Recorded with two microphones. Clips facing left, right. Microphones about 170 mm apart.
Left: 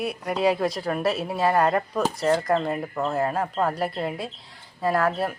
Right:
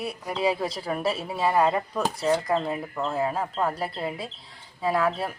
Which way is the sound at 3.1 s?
5° right (ahead or behind).